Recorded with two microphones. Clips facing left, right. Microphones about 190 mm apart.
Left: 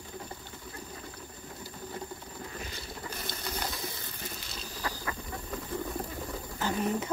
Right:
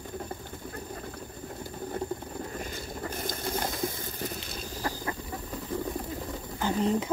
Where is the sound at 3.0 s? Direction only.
50° right (ahead or behind).